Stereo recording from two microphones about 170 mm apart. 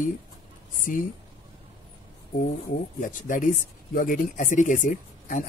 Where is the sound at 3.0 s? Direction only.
50° left (ahead or behind).